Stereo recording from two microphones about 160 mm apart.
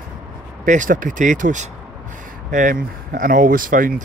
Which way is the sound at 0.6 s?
55° right (ahead or behind).